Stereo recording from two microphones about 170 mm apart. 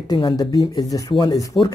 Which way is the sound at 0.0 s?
25° left (ahead or behind).